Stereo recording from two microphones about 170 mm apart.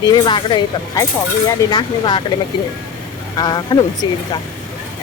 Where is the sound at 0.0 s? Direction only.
25° left (ahead or behind).